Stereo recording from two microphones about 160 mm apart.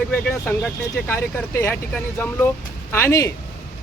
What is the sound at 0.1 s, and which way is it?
Speech, 5° left (ahead or behind).